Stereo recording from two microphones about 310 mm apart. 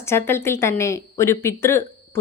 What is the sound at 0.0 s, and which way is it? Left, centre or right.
Speech, centre.